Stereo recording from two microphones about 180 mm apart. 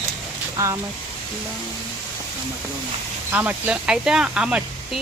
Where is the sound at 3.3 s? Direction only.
10° right (ahead or behind).